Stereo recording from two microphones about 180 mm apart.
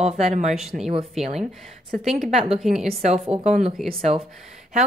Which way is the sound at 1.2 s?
40° right (ahead or behind).